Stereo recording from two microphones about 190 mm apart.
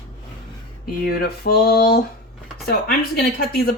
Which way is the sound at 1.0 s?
55° left (ahead or behind).